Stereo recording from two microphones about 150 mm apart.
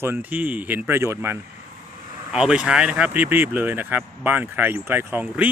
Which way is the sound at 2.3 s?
5° right (ahead or behind).